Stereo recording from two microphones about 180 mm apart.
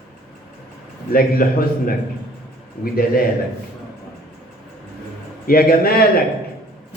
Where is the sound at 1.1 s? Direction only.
55° left (ahead or behind).